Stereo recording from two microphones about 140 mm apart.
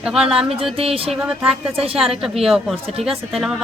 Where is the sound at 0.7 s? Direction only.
40° right (ahead or behind).